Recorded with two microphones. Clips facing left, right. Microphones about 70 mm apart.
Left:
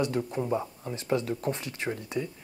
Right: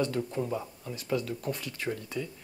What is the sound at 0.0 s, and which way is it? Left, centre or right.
Speech, centre.